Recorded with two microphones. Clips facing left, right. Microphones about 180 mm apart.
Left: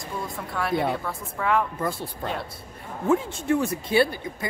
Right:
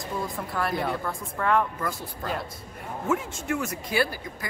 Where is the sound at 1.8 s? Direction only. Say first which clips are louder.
Left 3 dB; 30° left (ahead or behind).